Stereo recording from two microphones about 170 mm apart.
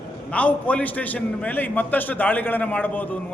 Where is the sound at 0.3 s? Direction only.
10° left (ahead or behind).